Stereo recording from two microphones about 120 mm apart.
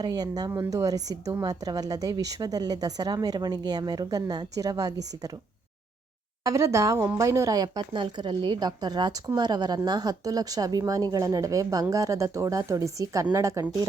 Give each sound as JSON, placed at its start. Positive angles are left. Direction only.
{"t": 0.0, "sound": "speech", "side_deg": -35}
{"t": 6.4, "sound": "speech", "side_deg": -25}